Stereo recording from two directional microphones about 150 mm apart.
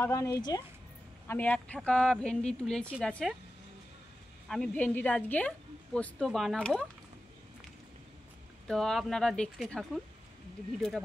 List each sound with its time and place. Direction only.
0.0 s speech: 20° left (ahead or behind)
1.2 s a woman's voice: 15° left (ahead or behind)
4.5 s a woman's voice: 5° left (ahead or behind)
8.6 s a woman's voice: centre (ahead or behind)